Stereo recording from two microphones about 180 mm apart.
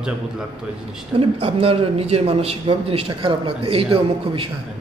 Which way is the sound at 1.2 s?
30° right (ahead or behind).